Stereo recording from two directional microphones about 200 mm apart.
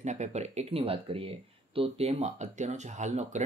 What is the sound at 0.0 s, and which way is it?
Speech, 35° right (ahead or behind).